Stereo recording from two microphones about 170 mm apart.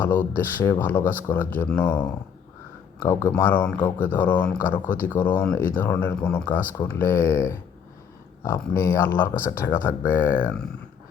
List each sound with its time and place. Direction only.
0.3 s speech: 15° left (ahead or behind)